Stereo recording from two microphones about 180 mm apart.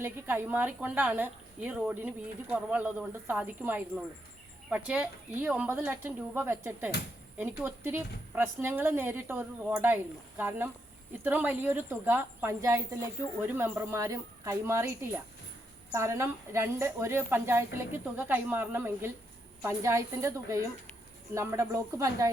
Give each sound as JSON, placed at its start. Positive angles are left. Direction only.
{"t": 0.0, "sound": "speech", "side_deg": -10}